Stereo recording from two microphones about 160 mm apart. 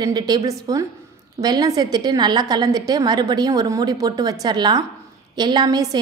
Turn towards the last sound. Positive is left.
turn(degrees=-25)  # may be behind; listen again after turning